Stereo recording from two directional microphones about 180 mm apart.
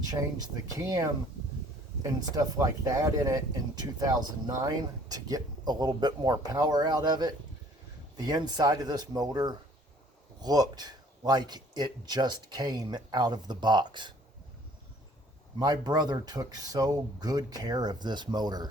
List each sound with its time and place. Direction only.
0.0 s speech: 20° right (ahead or behind)
2.3 s speech: 20° right (ahead or behind)
15.5 s speech: 20° right (ahead or behind)